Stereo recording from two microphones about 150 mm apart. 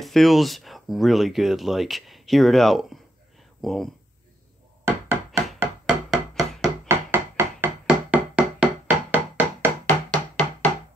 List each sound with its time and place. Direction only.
0.0 s speech: centre (ahead or behind)
4.8 s knock: 20° right (ahead or behind)
5.9 s hammer: 5° right (ahead or behind)
6.6 s a sound: 15° right (ahead or behind)
7.8 s music: 5° right (ahead or behind)
9.8 s music: 10° left (ahead or behind)